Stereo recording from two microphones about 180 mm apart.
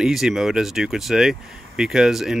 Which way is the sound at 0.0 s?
Centre (ahead or behind).